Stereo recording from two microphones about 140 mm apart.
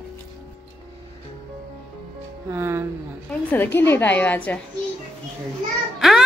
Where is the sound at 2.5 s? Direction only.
15° right (ahead or behind).